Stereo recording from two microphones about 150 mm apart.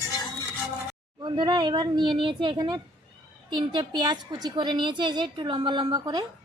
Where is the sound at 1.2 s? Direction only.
30° right (ahead or behind).